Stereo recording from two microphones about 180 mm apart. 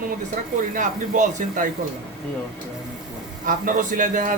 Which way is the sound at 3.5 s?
45° right (ahead or behind).